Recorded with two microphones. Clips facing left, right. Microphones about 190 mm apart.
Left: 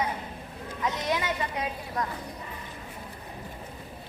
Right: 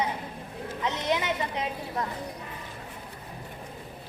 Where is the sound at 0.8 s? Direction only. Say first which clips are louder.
Even; 20° right (ahead or behind).